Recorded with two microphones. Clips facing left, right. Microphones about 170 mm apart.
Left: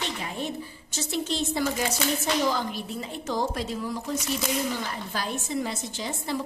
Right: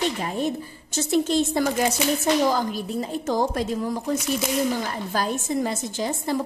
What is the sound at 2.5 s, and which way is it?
A woman's voice, 40° right (ahead or behind).